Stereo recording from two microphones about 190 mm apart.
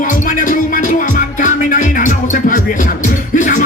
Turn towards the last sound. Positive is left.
turn(degrees=40)  # may be behind; listen again after turning